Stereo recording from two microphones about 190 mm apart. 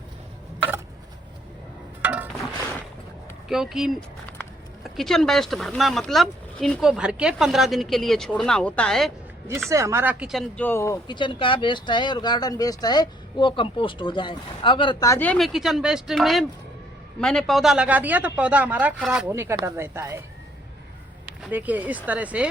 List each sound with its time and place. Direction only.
2.0 s a sound: 10° right (ahead or behind)
3.5 s speech: centre (ahead or behind)
9.6 s a man's voice: 15° right (ahead or behind)
10.6 s speech: 10° left (ahead or behind)
11.1 s a man's voice: 25° left (ahead or behind); by 20.2 s 15° right (ahead or behind)
21.5 s a man's voice: 10° right (ahead or behind)